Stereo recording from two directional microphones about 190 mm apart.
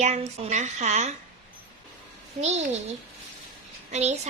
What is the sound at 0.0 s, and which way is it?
Speech, 35° right (ahead or behind).